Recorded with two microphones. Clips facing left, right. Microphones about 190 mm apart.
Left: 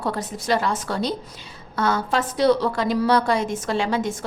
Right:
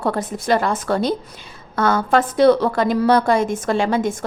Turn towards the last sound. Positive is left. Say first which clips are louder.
# right 4 dB
turn(degrees=-50)  # may be behind; listen again after turning